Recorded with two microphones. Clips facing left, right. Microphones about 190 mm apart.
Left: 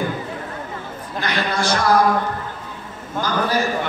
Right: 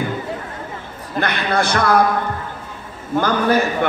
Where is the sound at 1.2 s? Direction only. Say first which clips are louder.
Right 3 dB; 55° right (ahead or behind).